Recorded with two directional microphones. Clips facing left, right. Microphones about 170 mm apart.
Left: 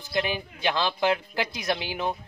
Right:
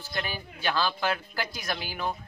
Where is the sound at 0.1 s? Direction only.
20° left (ahead or behind).